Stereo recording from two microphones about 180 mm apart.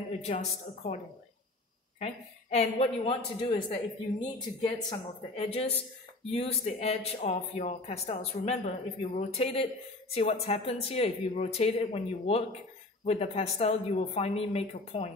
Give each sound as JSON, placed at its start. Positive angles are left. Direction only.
{"t": 0.2, "sound": "speech", "side_deg": 40}
{"t": 2.0, "sound": "speech", "side_deg": 35}